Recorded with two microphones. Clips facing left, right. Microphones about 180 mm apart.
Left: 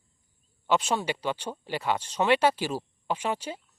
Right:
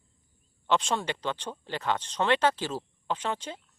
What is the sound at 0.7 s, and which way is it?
A woman's voice, 5° left (ahead or behind).